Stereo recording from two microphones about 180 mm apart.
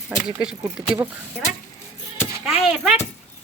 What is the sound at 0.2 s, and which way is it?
Speech, 5° right (ahead or behind).